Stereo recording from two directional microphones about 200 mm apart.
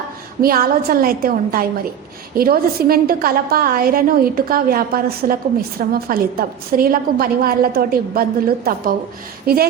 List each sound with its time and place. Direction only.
0.4 s a woman's voice: 50° right (ahead or behind)